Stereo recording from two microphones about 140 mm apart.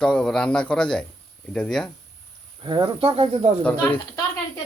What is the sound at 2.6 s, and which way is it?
Speech, 35° right (ahead or behind).